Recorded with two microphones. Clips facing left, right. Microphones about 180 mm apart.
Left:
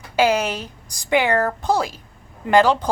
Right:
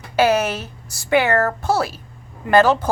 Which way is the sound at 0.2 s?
10° left (ahead or behind).